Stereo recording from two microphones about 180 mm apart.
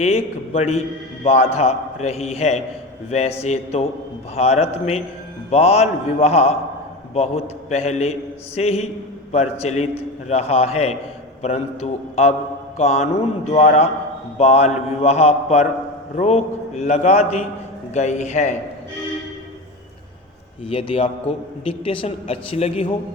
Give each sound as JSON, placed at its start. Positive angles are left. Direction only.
{"t": 0.0, "sound": "a man's voice", "side_deg": 35}
{"t": 20.7, "sound": "a man's voice", "side_deg": 30}